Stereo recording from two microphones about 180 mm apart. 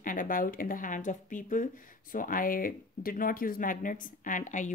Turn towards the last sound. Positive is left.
turn(degrees=45)  # may be behind; listen again after turning